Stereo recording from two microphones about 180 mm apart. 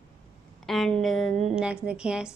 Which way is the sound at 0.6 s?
Centre (ahead or behind).